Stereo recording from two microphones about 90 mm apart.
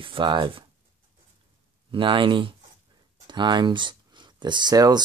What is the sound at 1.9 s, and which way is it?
Speech, 65° right (ahead or behind).